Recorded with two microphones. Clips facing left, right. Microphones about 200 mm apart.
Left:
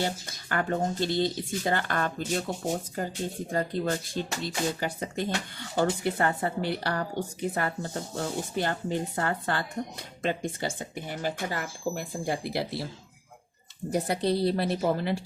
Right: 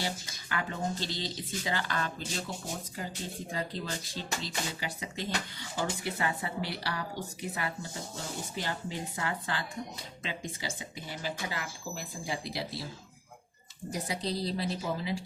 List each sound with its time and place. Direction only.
0.0 s speech: 50° left (ahead or behind)
13.9 s speech: 60° left (ahead or behind)